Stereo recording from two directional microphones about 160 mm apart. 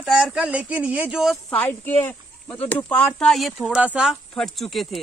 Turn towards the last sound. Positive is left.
turn(degrees=0)  # may be behind; listen again after turning